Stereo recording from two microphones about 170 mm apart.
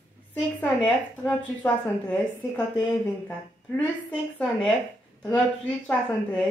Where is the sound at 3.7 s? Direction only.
5° left (ahead or behind).